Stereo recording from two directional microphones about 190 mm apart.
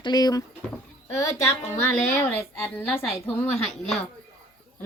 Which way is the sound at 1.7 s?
10° left (ahead or behind).